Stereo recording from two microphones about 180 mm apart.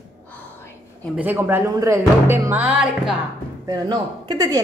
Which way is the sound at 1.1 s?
10° right (ahead or behind).